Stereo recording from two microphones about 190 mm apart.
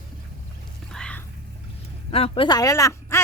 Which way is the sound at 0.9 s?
5° left (ahead or behind).